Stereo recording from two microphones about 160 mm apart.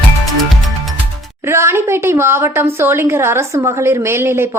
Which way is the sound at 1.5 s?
15° right (ahead or behind).